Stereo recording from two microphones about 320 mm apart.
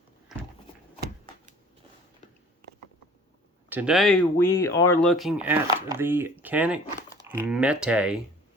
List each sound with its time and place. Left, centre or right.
3.7 s speech: centre